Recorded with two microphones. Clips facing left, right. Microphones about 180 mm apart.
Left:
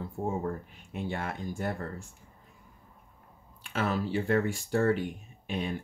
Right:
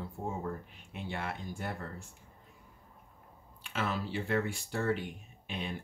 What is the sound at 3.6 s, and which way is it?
Speech, 45° left (ahead or behind).